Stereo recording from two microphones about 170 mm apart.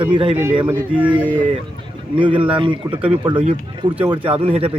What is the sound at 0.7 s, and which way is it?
Speech, 10° right (ahead or behind).